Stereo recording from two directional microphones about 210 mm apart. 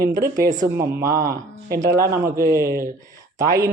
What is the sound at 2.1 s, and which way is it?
Speech, 15° right (ahead or behind).